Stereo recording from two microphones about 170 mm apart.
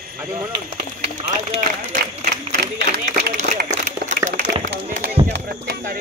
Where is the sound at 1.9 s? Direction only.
50° right (ahead or behind).